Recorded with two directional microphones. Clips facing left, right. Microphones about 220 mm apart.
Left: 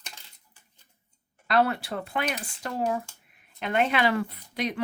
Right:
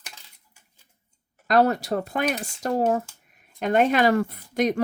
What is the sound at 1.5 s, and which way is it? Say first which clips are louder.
Speech: right 5 dB; 40° right (ahead or behind).